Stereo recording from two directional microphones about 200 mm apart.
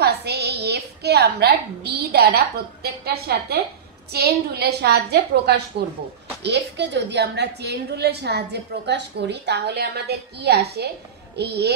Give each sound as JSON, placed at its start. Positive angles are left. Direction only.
{"t": 0.0, "sound": "a woman's voice", "side_deg": -55}